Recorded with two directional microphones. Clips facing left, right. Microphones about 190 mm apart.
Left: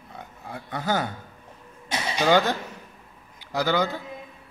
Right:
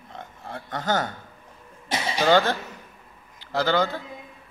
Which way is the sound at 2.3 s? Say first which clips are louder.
Right 1 dB; 15° left (ahead or behind).